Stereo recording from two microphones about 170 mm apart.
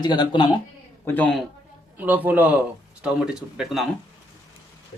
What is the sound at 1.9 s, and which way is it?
A man's voice, 10° right (ahead or behind).